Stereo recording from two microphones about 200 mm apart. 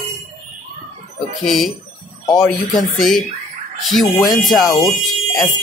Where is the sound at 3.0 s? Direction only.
Centre (ahead or behind).